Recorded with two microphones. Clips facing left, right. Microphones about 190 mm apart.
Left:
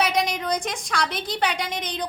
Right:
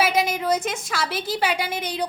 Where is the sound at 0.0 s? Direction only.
5° right (ahead or behind).